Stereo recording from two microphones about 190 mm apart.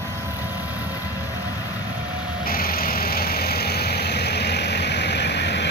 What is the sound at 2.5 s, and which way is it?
Vehicle, 50° left (ahead or behind).